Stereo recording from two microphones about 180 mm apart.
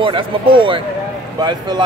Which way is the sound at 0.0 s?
30° right (ahead or behind).